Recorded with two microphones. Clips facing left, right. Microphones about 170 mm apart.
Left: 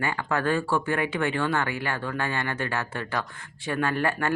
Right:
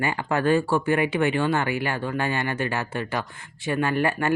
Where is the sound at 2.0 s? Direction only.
20° right (ahead or behind).